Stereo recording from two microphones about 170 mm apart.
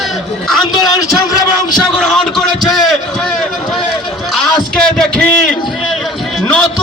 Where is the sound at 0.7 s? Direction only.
20° left (ahead or behind).